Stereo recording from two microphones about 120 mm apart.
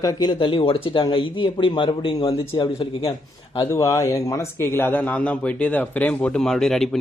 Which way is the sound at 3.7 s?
25° left (ahead or behind).